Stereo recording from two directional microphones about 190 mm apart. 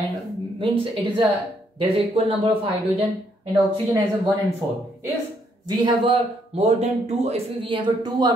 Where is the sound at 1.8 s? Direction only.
30° right (ahead or behind).